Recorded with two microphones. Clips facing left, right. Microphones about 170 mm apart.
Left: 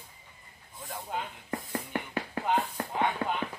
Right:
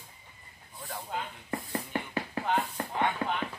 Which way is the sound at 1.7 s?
15° left (ahead or behind).